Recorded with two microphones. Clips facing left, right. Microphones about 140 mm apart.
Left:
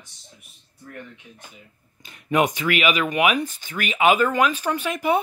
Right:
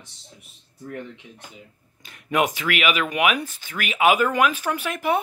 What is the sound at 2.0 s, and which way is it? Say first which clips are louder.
Speech: left 2 dB; centre (ahead or behind).